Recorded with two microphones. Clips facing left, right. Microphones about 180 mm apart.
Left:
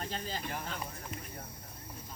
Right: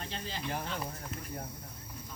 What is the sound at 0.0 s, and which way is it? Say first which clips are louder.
Speech: left 1 dB; 45° left (ahead or behind).